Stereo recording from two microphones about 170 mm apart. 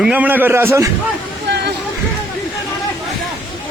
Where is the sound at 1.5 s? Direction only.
90° right.